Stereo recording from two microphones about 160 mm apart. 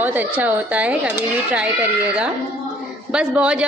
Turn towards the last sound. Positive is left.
turn(degrees=-5)  # may be behind; listen again after turning